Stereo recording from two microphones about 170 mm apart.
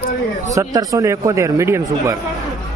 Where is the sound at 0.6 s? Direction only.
20° right (ahead or behind).